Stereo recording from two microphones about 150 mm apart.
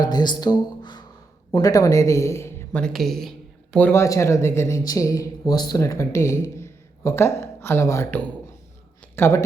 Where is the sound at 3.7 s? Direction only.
15° left (ahead or behind).